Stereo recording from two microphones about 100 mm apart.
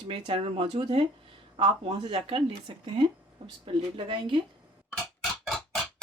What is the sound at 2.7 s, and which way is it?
Speech, 50° right (ahead or behind).